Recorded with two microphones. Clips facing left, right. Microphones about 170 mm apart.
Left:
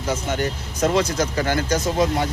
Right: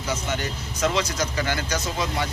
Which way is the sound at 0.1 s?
50° left (ahead or behind).